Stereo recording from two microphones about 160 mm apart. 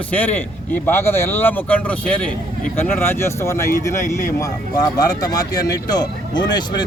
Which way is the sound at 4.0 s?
50° left (ahead or behind).